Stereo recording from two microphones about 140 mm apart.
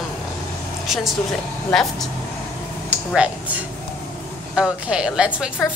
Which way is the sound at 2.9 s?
10° right (ahead or behind).